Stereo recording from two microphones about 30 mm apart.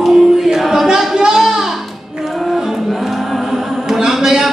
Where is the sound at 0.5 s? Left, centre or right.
Centre.